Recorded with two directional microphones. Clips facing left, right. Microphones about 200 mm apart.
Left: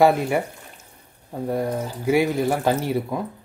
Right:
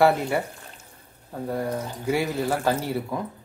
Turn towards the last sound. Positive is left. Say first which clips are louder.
# left 4 dB
turn(degrees=15)  # may be behind; listen again after turning